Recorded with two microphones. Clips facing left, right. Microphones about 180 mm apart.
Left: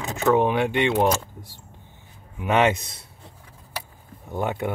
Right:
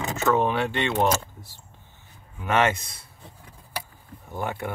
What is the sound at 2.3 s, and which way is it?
Speech, 15° left (ahead or behind).